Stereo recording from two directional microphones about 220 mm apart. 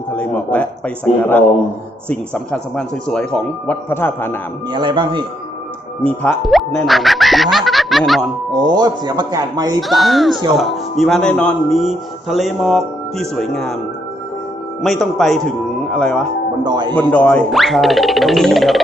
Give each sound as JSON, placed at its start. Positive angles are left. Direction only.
{"t": 0.1, "sound": "speech", "side_deg": 5}
{"t": 2.0, "sound": "speech", "side_deg": 5}
{"t": 4.7, "sound": "a man's voice", "side_deg": -20}
{"t": 6.0, "sound": "speech", "side_deg": 5}
{"t": 8.6, "sound": "a man's voice", "side_deg": -20}
{"t": 9.9, "sound": "speech", "side_deg": 0}
{"t": 14.8, "sound": "speech", "side_deg": 0}
{"t": 16.6, "sound": "a man's voice", "side_deg": -20}
{"t": 17.1, "sound": "speech", "side_deg": 5}